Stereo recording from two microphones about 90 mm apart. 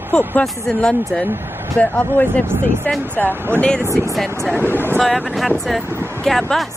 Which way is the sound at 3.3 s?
25° right (ahead or behind).